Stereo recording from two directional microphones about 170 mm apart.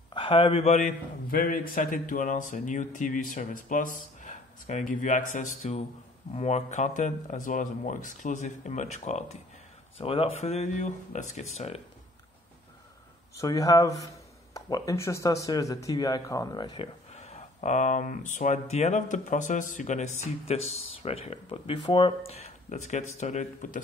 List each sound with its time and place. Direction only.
0.1 s a man's voice: 30° left (ahead or behind)
13.4 s speech: 20° left (ahead or behind); by 23.8 s 50° left (ahead or behind)